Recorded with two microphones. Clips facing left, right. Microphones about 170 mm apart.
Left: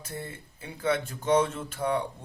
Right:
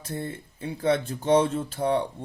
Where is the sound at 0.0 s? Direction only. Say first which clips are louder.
Right 5 dB; 35° right (ahead or behind).